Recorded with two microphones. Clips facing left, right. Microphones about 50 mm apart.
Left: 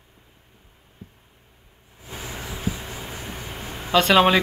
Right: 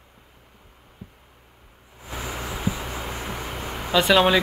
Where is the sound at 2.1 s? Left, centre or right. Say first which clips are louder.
Right 3 dB; right.